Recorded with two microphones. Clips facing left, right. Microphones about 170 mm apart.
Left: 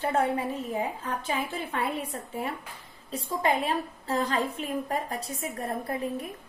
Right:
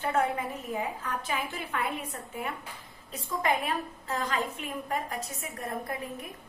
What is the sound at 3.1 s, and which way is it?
A woman's voice, 30° left (ahead or behind).